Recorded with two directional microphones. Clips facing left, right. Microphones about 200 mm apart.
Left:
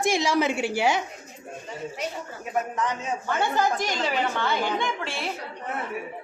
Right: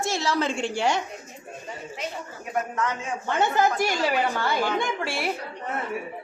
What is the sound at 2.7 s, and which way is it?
Speech, 15° left (ahead or behind).